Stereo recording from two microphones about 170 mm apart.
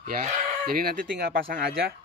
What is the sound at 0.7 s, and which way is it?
Speech, 60° right (ahead or behind).